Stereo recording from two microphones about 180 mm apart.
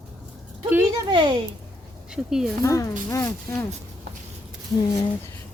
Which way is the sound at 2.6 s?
15° left (ahead or behind).